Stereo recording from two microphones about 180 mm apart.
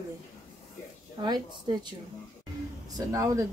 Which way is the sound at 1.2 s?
25° right (ahead or behind).